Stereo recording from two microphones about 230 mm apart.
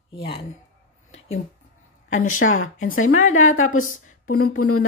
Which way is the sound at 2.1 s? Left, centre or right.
Left.